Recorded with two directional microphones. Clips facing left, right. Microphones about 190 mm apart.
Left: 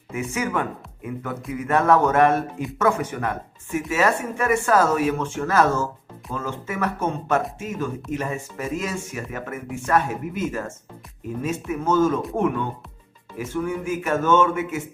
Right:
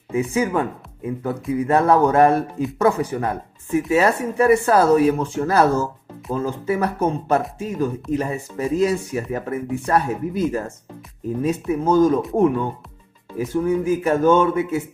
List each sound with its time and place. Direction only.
0.1 s speech: 35° right (ahead or behind)